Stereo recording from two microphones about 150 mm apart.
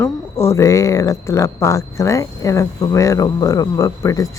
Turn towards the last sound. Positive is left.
turn(degrees=20)  # may be behind; listen again after turning